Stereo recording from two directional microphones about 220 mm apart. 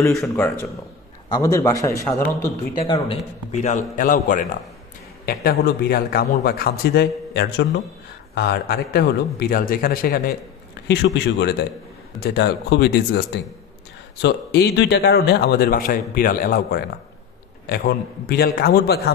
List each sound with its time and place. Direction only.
0.1 s speech: 5° left (ahead or behind)
3.1 s a man's voice: 30° left (ahead or behind); by 13.2 s 50° left (ahead or behind)
14.2 s a man's voice: 45° left (ahead or behind)